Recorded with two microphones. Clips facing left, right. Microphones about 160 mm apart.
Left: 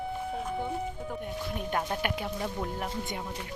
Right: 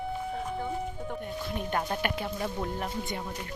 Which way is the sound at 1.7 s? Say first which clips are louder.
Right 1 dB; centre (ahead or behind).